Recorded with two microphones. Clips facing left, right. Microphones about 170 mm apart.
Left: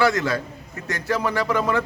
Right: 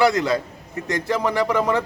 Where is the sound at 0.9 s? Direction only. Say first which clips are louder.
Right 2 dB; 20° right (ahead or behind).